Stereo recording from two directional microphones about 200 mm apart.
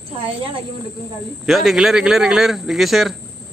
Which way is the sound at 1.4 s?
Centre (ahead or behind).